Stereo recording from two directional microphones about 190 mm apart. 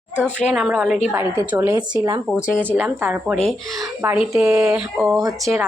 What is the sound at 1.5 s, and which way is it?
Speech, 15° right (ahead or behind).